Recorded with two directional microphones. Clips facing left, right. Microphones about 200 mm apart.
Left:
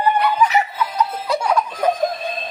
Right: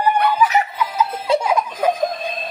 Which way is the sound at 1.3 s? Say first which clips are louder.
Right 7 dB; 25° right (ahead or behind).